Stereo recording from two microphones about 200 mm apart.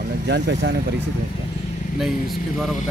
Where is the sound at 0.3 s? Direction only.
60° right (ahead or behind).